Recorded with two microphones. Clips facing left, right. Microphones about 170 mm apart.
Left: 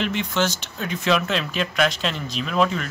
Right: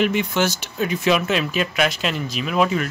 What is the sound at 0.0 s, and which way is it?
Speech, 10° right (ahead or behind).